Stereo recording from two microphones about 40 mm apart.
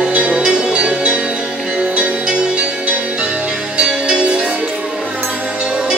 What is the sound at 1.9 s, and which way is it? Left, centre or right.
Music, right.